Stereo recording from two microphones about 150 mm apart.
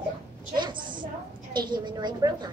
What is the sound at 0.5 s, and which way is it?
A woman's voice, 30° right (ahead or behind).